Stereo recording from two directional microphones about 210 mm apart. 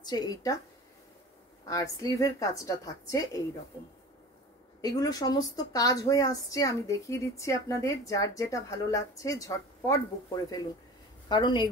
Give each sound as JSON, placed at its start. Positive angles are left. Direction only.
{"t": 0.0, "sound": "speech", "side_deg": 20}
{"t": 1.7, "sound": "speech", "side_deg": 15}
{"t": 4.8, "sound": "speech", "side_deg": 15}